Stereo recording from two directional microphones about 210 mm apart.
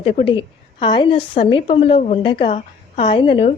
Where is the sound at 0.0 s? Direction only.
25° left (ahead or behind).